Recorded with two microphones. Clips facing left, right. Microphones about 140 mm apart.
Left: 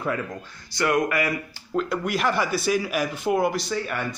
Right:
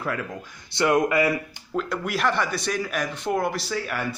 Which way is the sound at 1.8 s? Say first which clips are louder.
Left 1 dB; centre (ahead or behind).